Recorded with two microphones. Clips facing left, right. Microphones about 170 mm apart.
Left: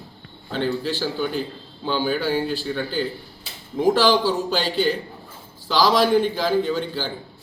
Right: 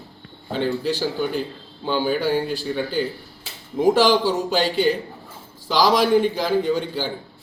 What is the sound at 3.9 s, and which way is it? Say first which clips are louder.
Speech: right 1 dB; 15° right (ahead or behind).